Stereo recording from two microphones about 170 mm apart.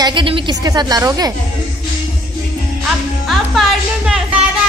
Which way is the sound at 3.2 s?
Centre (ahead or behind).